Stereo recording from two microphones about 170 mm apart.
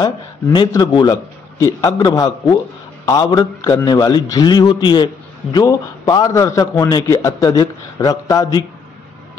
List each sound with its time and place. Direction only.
0.0 s a man's voice: 25° left (ahead or behind)